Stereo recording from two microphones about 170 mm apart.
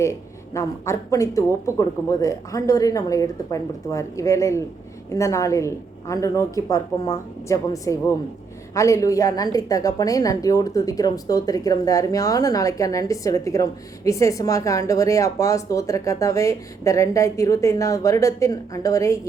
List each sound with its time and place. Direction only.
0.0 s a woman's voice: 15° left (ahead or behind)